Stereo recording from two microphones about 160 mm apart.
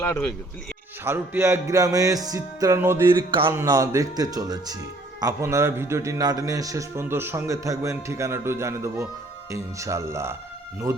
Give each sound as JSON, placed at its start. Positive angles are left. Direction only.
{"t": 1.0, "sound": "speech", "side_deg": -15}
{"t": 3.2, "sound": "speech", "side_deg": -30}
{"t": 3.5, "sound": "a man's voice", "side_deg": -20}